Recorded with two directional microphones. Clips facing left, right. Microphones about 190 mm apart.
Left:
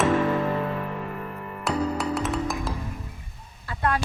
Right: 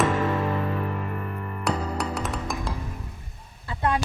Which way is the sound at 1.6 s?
Centre (ahead or behind).